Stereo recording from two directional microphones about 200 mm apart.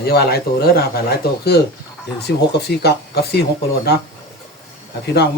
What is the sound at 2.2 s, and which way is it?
Speech, 55° left (ahead or behind).